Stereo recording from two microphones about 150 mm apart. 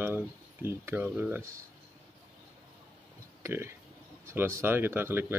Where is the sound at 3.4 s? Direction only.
15° right (ahead or behind).